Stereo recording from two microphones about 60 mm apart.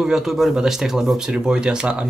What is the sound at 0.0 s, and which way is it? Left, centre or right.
Speech, centre.